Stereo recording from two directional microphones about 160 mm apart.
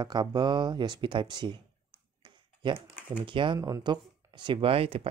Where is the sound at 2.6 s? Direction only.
35° right (ahead or behind).